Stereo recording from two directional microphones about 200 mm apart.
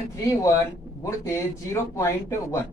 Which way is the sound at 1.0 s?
15° left (ahead or behind).